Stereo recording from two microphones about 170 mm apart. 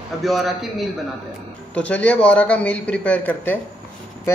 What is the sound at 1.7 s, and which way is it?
A man's voice, 10° left (ahead or behind).